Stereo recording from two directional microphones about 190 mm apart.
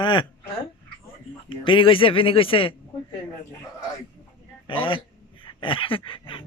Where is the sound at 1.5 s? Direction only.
25° left (ahead or behind).